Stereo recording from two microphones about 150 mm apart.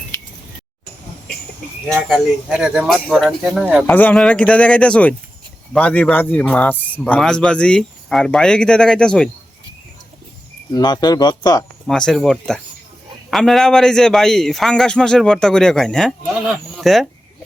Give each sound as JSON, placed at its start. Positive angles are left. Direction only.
{"t": 2.0, "sound": "a man's voice", "side_deg": 0}
{"t": 3.8, "sound": "a man's voice", "side_deg": 10}
{"t": 10.7, "sound": "speech", "side_deg": 25}
{"t": 11.9, "sound": "a man's voice", "side_deg": 5}